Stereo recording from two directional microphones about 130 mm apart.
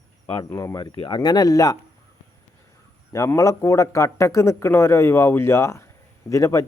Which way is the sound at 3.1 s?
20° left (ahead or behind).